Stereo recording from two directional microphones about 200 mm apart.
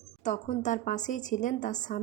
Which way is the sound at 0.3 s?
40° left (ahead or behind).